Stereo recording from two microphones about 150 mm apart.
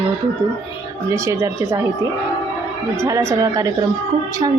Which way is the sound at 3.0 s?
20° right (ahead or behind).